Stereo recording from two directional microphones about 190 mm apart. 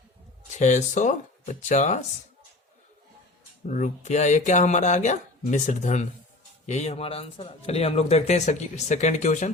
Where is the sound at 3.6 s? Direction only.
40° left (ahead or behind).